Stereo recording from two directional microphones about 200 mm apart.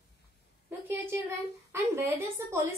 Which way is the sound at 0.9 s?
15° right (ahead or behind).